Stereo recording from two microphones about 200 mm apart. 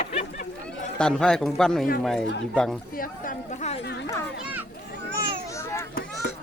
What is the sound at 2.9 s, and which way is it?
Speech, 45° left (ahead or behind).